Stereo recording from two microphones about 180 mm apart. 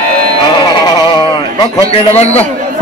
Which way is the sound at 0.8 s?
25° left (ahead or behind).